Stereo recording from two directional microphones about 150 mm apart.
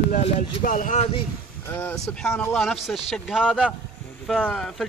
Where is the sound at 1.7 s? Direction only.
15° left (ahead or behind).